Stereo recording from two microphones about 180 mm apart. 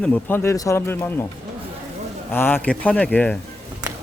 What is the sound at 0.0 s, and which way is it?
Speech, 10° left (ahead or behind).